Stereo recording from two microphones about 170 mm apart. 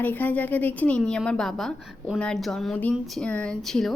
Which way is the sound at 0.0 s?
10° left (ahead or behind).